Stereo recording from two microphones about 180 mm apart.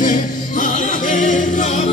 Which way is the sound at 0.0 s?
50° left (ahead or behind).